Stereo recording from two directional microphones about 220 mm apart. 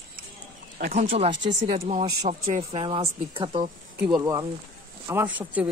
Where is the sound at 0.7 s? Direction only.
35° right (ahead or behind).